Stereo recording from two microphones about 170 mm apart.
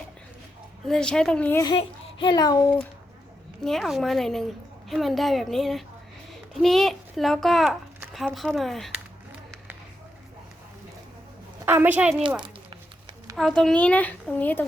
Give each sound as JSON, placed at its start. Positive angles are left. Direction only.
{"t": 0.9, "sound": "a woman's voice", "side_deg": 5}
{"t": 1.6, "sound": "a child's voice", "side_deg": 30}
{"t": 3.6, "sound": "a woman's voice", "side_deg": 0}
{"t": 11.6, "sound": "a woman's voice", "side_deg": -10}
{"t": 13.3, "sound": "speech", "side_deg": 0}